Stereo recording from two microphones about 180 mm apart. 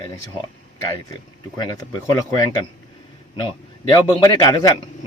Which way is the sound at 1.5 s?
25° left (ahead or behind).